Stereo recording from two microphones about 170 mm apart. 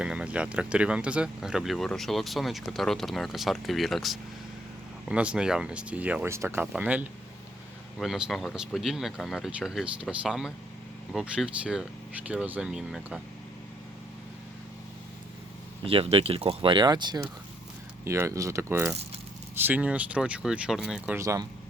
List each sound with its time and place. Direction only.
0.0 s speech: 5° right (ahead or behind)
15.8 s speech: 35° right (ahead or behind); by 21.2 s 5° right (ahead or behind)
21.2 s speech: 15° right (ahead or behind)